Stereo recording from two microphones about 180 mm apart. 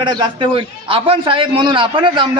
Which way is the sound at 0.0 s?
25° right (ahead or behind).